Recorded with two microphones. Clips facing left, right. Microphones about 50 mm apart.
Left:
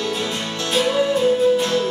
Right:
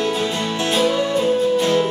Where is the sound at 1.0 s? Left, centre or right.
Centre.